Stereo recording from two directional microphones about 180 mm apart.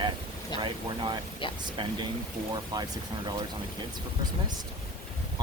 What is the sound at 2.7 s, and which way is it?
Speech, 25° right (ahead or behind).